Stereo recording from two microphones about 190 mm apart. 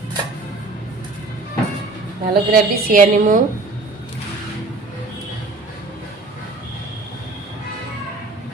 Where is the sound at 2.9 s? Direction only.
45° right (ahead or behind).